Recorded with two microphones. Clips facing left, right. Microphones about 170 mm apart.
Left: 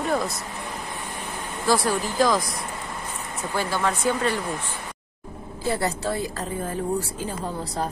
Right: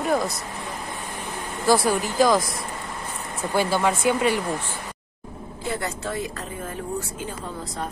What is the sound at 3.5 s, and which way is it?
Speech, 15° right (ahead or behind).